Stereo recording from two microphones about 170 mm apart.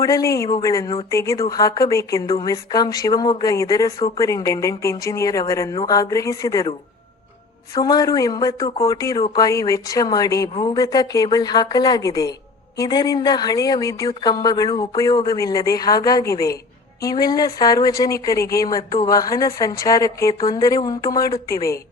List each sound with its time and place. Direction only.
0.0 s a woman's voice: 20° left (ahead or behind)
7.8 s a woman's voice: 20° left (ahead or behind)